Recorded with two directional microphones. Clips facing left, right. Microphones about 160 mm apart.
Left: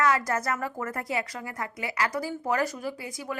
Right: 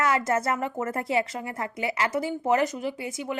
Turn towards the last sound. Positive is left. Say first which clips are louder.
# right 3 dB
turn(degrees=-20)  # may be behind; listen again after turning